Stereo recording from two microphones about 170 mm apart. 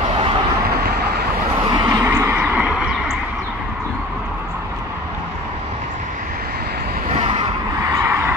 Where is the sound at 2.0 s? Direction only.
15° right (ahead or behind).